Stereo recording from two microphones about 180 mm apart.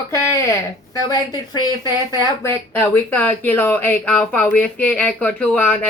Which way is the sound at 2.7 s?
10° left (ahead or behind).